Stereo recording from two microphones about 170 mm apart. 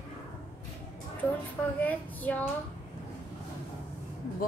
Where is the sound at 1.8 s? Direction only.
10° left (ahead or behind).